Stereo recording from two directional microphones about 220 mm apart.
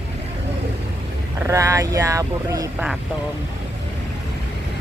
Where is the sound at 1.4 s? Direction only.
15° right (ahead or behind).